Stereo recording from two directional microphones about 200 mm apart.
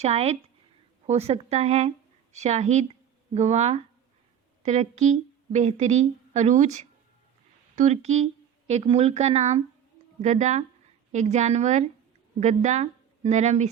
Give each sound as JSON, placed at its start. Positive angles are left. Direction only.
{"t": 0.0, "sound": "a woman's voice", "side_deg": -30}